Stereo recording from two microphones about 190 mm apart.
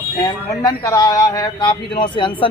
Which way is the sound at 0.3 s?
20° left (ahead or behind).